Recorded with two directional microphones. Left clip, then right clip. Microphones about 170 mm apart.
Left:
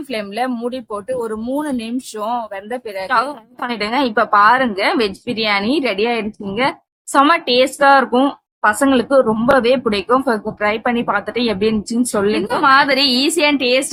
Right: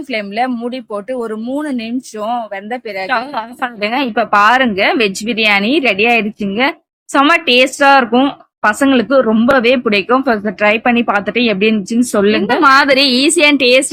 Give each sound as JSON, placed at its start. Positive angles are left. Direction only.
{"t": 0.1, "sound": "speech", "side_deg": -15}
{"t": 12.3, "sound": "a woman's voice", "side_deg": -30}